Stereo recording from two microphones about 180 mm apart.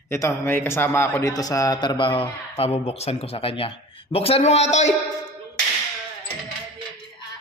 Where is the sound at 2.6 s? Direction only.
35° left (ahead or behind).